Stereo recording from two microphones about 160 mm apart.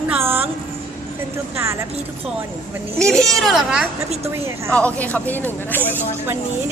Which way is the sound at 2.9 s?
5° left (ahead or behind).